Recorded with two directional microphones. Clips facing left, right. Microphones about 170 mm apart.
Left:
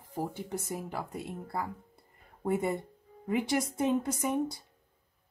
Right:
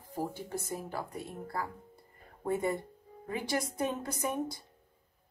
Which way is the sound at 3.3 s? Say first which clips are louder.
Left 4 dB; 20° left (ahead or behind).